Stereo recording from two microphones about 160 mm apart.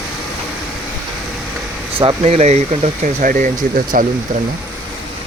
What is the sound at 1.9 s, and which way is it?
Speech, 35° right (ahead or behind).